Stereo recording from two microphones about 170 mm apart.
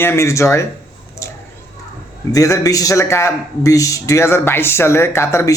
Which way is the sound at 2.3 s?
20° left (ahead or behind).